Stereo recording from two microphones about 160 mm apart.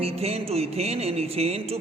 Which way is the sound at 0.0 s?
40° right (ahead or behind).